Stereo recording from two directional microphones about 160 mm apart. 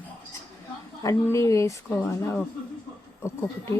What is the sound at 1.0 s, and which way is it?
Speech, 20° left (ahead or behind).